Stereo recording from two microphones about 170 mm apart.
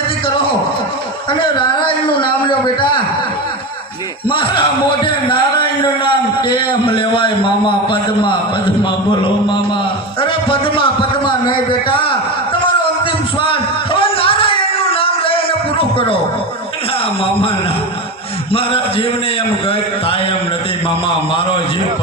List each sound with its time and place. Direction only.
1.3 s a man's voice: 30° left (ahead or behind)
4.3 s a man's voice: 30° left (ahead or behind)
13.4 s a sound: 30° left (ahead or behind)
18.5 s a man's voice: 35° left (ahead or behind)